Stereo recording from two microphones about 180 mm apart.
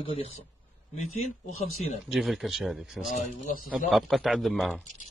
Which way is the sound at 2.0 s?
Centre (ahead or behind).